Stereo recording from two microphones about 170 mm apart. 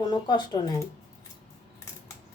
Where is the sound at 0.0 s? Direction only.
25° left (ahead or behind).